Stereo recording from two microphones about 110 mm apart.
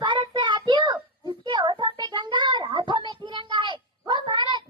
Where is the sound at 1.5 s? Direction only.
45° right (ahead or behind).